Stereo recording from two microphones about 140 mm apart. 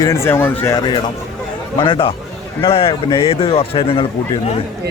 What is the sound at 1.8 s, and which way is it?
A man's voice, 35° left (ahead or behind).